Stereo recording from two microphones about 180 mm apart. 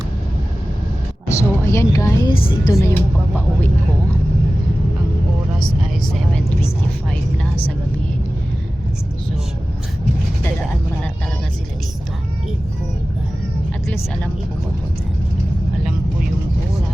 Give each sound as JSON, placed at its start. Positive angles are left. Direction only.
{"t": 1.3, "sound": "a woman's voice", "side_deg": 15}
{"t": 7.1, "sound": "a woman's voice", "side_deg": 5}